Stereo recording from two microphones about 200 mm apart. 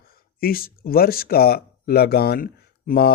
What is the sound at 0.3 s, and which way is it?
Speech, 50° left (ahead or behind).